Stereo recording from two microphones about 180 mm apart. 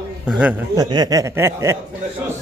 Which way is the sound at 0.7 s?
20° right (ahead or behind).